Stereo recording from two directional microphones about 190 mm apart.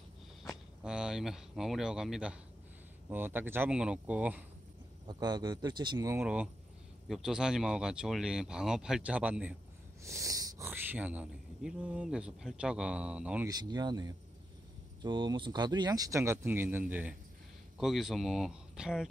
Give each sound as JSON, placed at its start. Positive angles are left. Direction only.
{"t": 0.4, "sound": "speech", "side_deg": 0}
{"t": 5.0, "sound": "speech", "side_deg": -20}
{"t": 13.5, "sound": "speech", "side_deg": -20}